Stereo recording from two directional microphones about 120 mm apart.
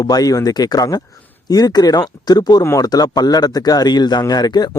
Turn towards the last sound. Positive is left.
turn(degrees=35)  # may be behind; listen again after turning